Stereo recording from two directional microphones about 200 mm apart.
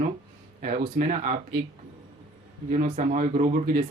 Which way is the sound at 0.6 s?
40° right (ahead or behind).